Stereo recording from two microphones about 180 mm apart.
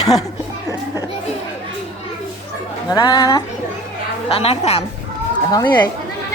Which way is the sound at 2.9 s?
20° left (ahead or behind).